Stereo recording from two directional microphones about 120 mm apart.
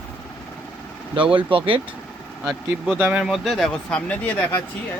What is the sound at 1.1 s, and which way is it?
Speech, 45° right (ahead or behind).